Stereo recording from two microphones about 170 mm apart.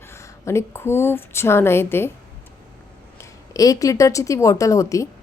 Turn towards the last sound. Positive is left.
turn(degrees=20)  # may be behind; listen again after turning